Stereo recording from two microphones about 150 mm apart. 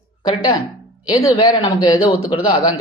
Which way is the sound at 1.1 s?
30° left (ahead or behind).